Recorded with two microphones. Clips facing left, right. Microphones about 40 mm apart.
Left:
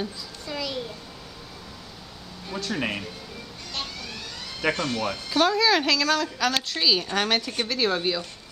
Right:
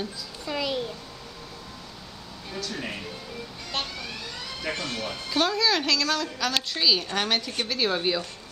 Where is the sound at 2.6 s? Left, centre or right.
Left.